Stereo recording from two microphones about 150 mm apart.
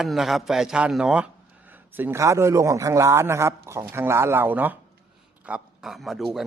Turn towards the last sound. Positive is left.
turn(degrees=0)  # may be behind; listen again after turning